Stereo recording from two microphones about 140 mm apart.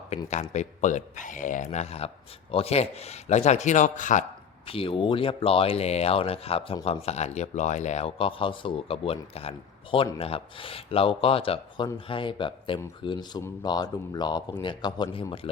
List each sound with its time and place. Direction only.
0.3 s speech: 55° left (ahead or behind)
4.6 s speech: 40° left (ahead or behind)